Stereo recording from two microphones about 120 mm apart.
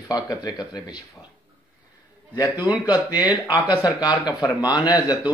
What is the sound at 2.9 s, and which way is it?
Speech, 30° left (ahead or behind).